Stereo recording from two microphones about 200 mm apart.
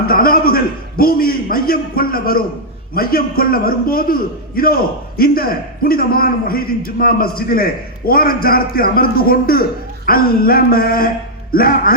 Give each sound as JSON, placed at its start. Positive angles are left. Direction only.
{"t": 0.1, "sound": "a man's voice", "side_deg": 45}